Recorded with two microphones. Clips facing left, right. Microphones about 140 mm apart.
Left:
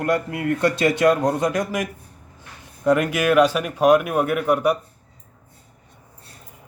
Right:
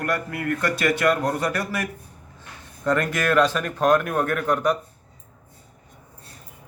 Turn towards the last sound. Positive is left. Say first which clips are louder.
# left 3 dB
turn(degrees=10)  # may be behind; listen again after turning